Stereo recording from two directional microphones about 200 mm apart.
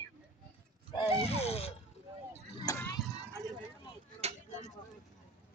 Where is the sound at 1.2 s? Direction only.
30° left (ahead or behind).